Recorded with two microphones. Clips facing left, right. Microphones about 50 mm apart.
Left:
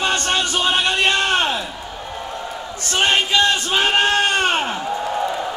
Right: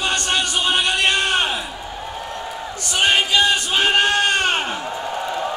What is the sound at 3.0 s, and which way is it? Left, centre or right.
Speech, centre.